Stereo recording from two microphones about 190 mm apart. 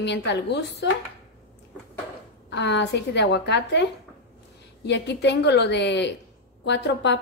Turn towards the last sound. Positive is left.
turn(degrees=65)  # may be behind; listen again after turning